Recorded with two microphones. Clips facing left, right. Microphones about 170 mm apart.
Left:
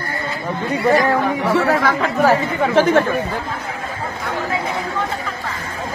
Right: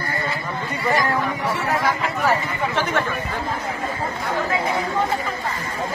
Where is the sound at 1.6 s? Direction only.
90° left.